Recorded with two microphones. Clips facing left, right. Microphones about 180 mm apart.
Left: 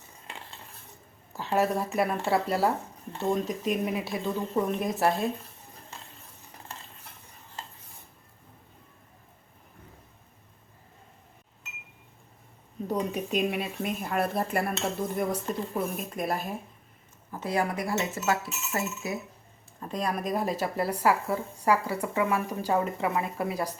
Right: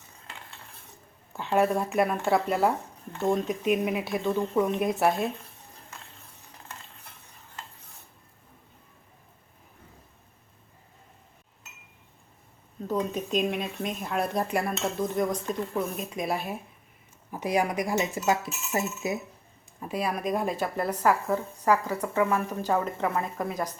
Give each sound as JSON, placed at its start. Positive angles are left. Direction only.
{"t": 1.3, "sound": "speech", "side_deg": 0}
{"t": 12.9, "sound": "speech", "side_deg": 10}
{"t": 17.3, "sound": "speech", "side_deg": -15}
{"t": 19.8, "sound": "speech", "side_deg": -5}